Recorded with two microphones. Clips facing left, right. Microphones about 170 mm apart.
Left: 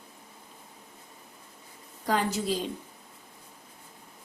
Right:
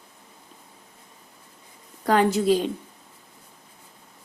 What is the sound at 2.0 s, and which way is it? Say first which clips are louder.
Speech: right 8 dB; 65° right (ahead or behind).